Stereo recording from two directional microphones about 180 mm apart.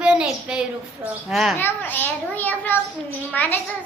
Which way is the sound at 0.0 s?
5° right (ahead or behind).